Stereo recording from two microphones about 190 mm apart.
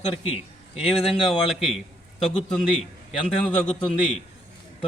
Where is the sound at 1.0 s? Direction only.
30° left (ahead or behind).